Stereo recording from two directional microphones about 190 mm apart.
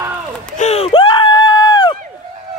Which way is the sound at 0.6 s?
35° left (ahead or behind).